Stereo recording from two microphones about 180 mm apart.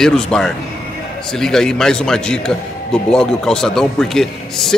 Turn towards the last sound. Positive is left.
turn(degrees=0)  # may be behind; listen again after turning